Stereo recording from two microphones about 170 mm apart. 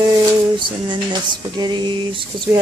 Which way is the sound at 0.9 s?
25° right (ahead or behind).